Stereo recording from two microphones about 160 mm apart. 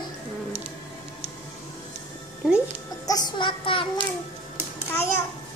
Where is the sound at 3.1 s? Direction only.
25° left (ahead or behind).